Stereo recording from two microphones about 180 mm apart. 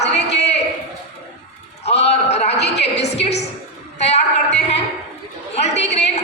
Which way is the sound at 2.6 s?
70° left (ahead or behind).